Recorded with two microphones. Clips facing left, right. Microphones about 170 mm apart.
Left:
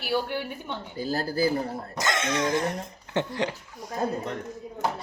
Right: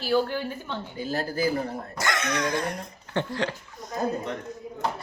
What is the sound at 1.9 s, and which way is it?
Speech, 20° left (ahead or behind).